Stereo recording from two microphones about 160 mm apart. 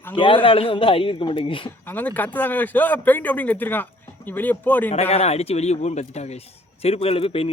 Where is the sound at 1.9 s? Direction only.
10° left (ahead or behind).